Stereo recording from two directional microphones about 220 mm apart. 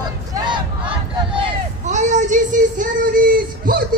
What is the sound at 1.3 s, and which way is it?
Child singing, 30° right (ahead or behind).